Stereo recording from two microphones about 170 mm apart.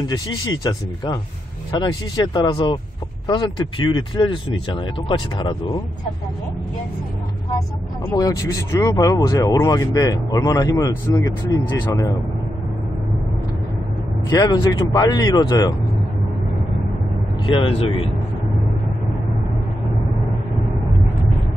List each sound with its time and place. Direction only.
0.0 s speech: 25° left (ahead or behind)
8.0 s speech: 20° left (ahead or behind)
14.4 s speech: 20° left (ahead or behind)
17.5 s speech: 30° left (ahead or behind)